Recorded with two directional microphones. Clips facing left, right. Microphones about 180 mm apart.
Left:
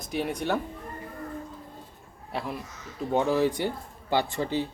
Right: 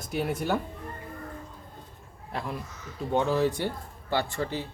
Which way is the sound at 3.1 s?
10° left (ahead or behind).